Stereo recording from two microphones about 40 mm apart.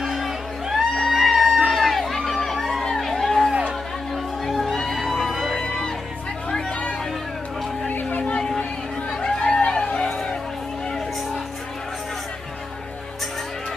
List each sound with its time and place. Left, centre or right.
0.0 s music: centre
5.6 s music: centre
7.9 s a sound: left
8.2 s a sound: left
9.2 s chatter: centre
9.7 s music: left